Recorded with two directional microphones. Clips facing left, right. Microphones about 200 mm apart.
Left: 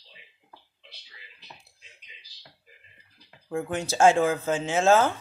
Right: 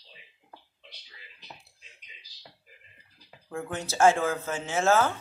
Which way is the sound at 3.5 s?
15° left (ahead or behind).